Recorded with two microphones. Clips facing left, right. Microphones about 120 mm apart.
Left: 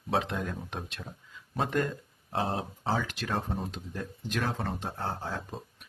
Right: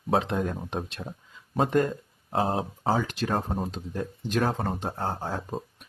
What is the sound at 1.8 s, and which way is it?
Speech, 35° right (ahead or behind).